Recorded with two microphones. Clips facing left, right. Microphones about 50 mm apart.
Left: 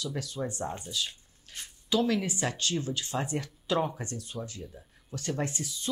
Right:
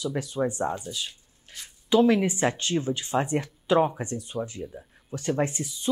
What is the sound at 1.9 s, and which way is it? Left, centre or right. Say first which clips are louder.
Speech: right 7 dB; right.